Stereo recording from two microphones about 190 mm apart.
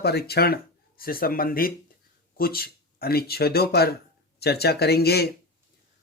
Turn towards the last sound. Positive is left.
turn(degrees=55)  # may be behind; listen again after turning